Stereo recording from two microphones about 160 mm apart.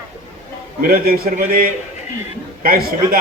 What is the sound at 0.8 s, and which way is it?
A man's voice, 65° right (ahead or behind).